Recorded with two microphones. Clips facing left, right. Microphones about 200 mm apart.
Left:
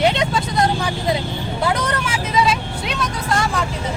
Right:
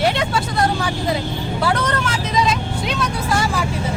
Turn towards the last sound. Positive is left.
turn(degrees=0)  # may be behind; listen again after turning